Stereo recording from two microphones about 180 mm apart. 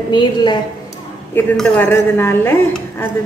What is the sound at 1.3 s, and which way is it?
Speech, 10° left (ahead or behind).